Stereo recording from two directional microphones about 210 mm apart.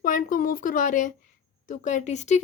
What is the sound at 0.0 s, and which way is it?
Speech, 40° left (ahead or behind).